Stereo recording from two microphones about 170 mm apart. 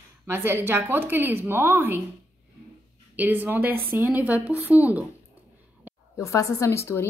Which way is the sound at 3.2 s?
10° right (ahead or behind).